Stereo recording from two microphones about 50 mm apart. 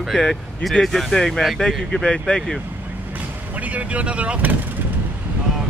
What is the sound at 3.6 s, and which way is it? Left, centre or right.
Speech, right.